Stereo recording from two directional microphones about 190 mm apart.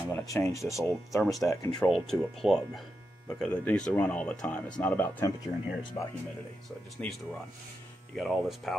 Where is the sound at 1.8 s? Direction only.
Centre (ahead or behind).